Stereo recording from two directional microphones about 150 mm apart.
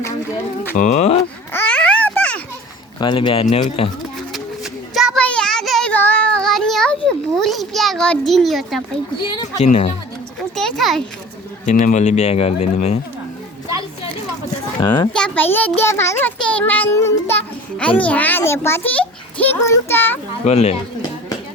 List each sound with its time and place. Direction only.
0.8 s speech: 50° left (ahead or behind)
1.5 s babbling: 10° left (ahead or behind)
3.0 s speech: 30° left (ahead or behind)
4.3 s a sound: centre (ahead or behind)
5.2 s child singing: 5° left (ahead or behind)
7.3 s a child's voice: centre (ahead or behind)
9.1 s speech: 30° left (ahead or behind)
9.6 s speech: 50° left (ahead or behind)
10.5 s a child's voice: 5° left (ahead or behind)
11.6 s speech: 60° left (ahead or behind)
14.8 s speech: 25° left (ahead or behind)
15.1 s a child's voice: 10° left (ahead or behind)
20.4 s speech: 45° left (ahead or behind)